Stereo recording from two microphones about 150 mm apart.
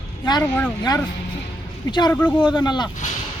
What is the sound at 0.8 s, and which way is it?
Speech, 25° left (ahead or behind).